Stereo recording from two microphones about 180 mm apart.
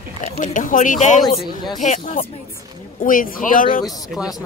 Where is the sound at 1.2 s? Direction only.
25° left (ahead or behind).